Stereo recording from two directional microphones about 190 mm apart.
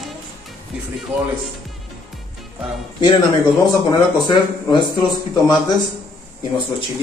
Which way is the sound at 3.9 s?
25° left (ahead or behind).